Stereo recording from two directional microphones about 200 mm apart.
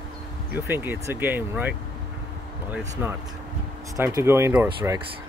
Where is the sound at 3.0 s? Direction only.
10° right (ahead or behind).